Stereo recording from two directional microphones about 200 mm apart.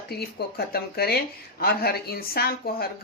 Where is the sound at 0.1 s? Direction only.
50° left (ahead or behind).